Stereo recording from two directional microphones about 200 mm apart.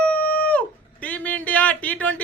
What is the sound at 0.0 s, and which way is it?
Dog, 5° left (ahead or behind).